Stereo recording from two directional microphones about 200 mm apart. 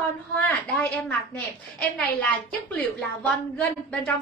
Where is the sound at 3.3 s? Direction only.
5° left (ahead or behind).